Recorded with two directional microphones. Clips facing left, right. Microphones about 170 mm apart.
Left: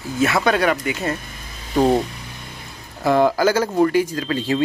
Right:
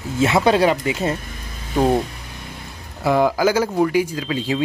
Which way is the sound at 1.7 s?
10° right (ahead or behind).